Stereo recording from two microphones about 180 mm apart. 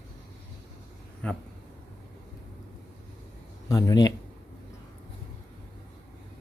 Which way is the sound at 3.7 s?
20° left (ahead or behind).